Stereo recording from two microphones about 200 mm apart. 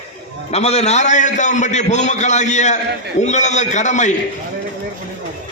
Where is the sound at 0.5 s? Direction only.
35° left (ahead or behind).